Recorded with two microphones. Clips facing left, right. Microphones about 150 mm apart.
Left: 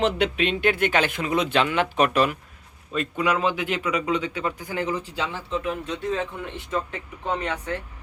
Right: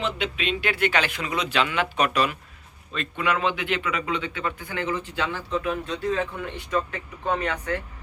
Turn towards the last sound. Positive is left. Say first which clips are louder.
# right 1 dB
turn(degrees=25)  # may be behind; listen again after turning